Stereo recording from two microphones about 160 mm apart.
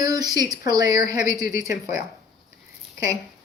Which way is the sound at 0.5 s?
20° right (ahead or behind).